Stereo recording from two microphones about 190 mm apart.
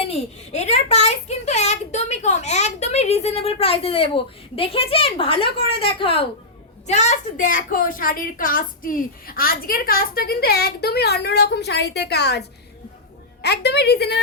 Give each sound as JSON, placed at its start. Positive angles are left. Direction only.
{"t": 0.0, "sound": "a child's voice", "side_deg": 35}
{"t": 13.4, "sound": "a woman's voice", "side_deg": 60}